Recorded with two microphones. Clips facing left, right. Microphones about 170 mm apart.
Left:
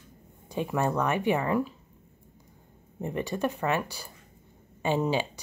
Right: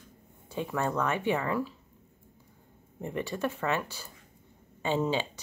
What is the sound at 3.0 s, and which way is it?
Speech, 20° left (ahead or behind).